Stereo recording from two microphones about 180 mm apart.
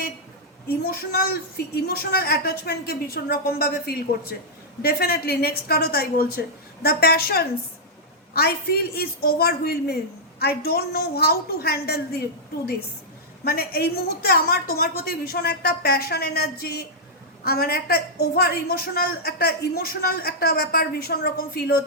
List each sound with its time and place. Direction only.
0.8 s a woman's voice: 60° left (ahead or behind)
13.4 s a woman's voice: 60° left (ahead or behind)